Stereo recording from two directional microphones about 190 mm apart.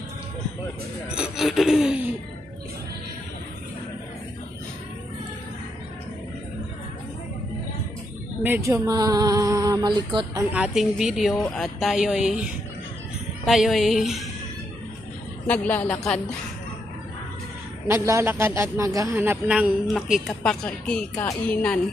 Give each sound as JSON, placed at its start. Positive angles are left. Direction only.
{"t": 1.0, "sound": "speech", "side_deg": -5}
{"t": 8.6, "sound": "music", "side_deg": -15}
{"t": 10.5, "sound": "speech", "side_deg": -5}
{"t": 13.5, "sound": "speech", "side_deg": 0}
{"t": 15.4, "sound": "a woman's voice", "side_deg": 10}
{"t": 17.8, "sound": "speech", "side_deg": -15}
{"t": 21.1, "sound": "a woman's voice", "side_deg": 20}